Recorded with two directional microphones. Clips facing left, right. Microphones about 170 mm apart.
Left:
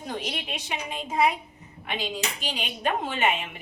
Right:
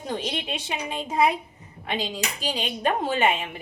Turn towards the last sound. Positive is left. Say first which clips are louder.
# right 3 dB
turn(degrees=-35)  # may be behind; listen again after turning